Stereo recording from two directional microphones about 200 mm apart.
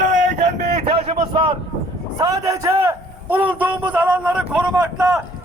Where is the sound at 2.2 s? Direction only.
15° right (ahead or behind).